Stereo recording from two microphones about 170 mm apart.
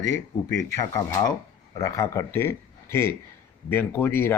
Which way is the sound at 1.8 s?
20° left (ahead or behind).